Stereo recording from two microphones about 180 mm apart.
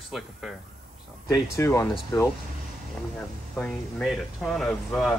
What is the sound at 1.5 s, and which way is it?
Speech, 15° left (ahead or behind).